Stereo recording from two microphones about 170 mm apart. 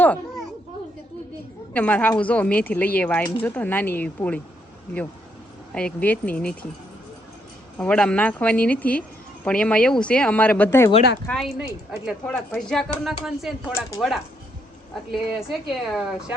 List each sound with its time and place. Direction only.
1.7 s speech: 10° left (ahead or behind)
5.7 s speech: 5° left (ahead or behind)
7.8 s speech: 5° left (ahead or behind)
11.3 s speech: centre (ahead or behind)
15.1 s speech: centre (ahead or behind)